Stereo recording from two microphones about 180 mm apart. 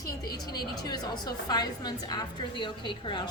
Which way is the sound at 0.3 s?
20° left (ahead or behind).